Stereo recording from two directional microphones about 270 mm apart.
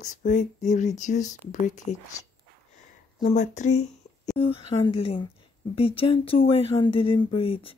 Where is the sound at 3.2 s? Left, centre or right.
Left.